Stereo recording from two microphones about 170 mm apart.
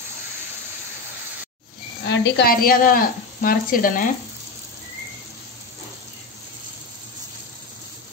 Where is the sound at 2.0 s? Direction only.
90° left; by 4.1 s 55° left (ahead or behind).